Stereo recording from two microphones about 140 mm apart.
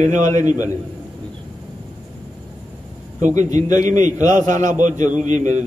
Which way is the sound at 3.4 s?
60° right (ahead or behind).